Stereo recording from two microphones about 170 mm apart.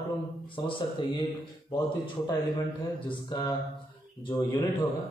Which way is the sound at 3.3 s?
25° left (ahead or behind).